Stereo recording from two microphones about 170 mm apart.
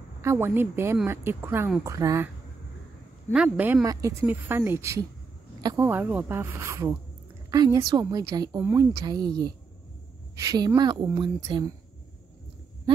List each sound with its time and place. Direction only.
0.2 s speech: 15° right (ahead or behind)
3.3 s speech: 10° right (ahead or behind)
5.9 s speech: 10° right (ahead or behind)
9.0 s speech: 25° right (ahead or behind)